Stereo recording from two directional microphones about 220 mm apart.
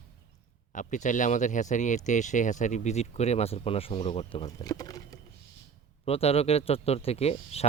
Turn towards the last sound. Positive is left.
turn(degrees=30)  # may be behind; listen again after turning